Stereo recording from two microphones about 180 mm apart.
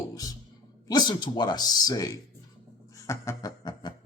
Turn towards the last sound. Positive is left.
turn(degrees=25)  # may be behind; listen again after turning